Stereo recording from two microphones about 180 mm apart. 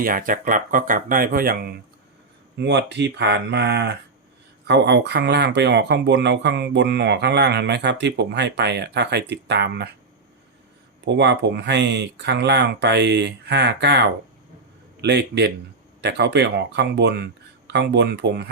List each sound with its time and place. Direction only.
0.0 s speech: 50° right (ahead or behind)
2.6 s speech: 75° right (ahead or behind)
11.0 s speech: 75° right (ahead or behind)